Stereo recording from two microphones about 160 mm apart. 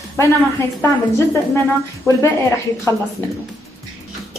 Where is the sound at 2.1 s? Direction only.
15° left (ahead or behind).